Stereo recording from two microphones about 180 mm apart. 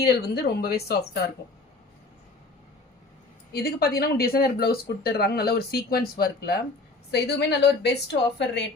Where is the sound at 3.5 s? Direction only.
60° left (ahead or behind).